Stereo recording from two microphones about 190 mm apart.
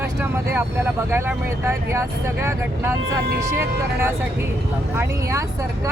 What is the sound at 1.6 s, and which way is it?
Speech, 15° right (ahead or behind).